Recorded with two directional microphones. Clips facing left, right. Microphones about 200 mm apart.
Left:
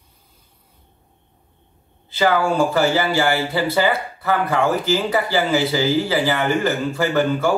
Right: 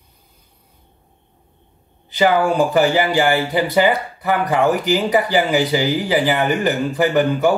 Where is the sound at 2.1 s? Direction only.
15° right (ahead or behind).